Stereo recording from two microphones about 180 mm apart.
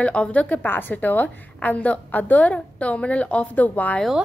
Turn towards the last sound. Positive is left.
turn(degrees=5)  # may be behind; listen again after turning